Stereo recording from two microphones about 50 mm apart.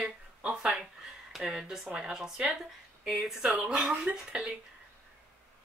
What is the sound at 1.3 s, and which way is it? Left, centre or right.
Speech, centre.